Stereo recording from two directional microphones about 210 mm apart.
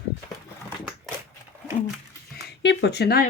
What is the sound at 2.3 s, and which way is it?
Speech, 55° left (ahead or behind).